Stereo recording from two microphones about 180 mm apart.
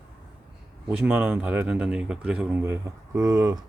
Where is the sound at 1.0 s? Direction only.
10° right (ahead or behind).